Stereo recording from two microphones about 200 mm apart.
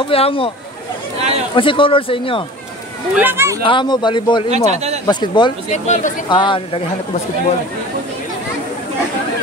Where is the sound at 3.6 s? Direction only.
25° left (ahead or behind).